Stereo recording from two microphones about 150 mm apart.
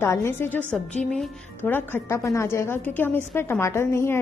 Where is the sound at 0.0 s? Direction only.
15° left (ahead or behind).